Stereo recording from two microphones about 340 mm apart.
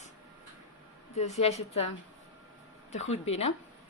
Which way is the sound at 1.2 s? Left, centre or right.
Centre.